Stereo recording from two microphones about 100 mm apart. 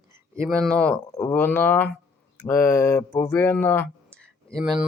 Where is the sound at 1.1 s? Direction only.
25° left (ahead or behind).